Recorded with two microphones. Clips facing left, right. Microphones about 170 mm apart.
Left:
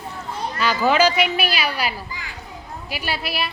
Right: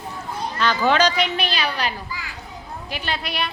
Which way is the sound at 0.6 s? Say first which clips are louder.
Left 1 dB; 5° left (ahead or behind).